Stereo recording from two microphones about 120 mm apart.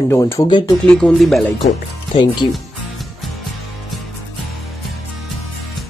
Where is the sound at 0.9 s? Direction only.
5° left (ahead or behind).